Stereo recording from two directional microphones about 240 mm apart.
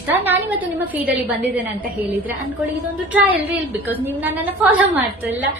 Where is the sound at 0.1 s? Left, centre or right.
Centre.